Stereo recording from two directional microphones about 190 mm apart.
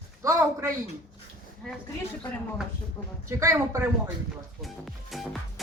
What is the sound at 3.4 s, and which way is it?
Speech, 15° right (ahead or behind).